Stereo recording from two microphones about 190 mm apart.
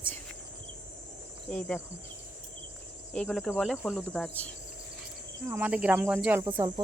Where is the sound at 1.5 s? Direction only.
10° left (ahead or behind).